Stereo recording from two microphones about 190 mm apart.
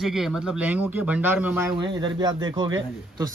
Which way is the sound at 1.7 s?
25° right (ahead or behind).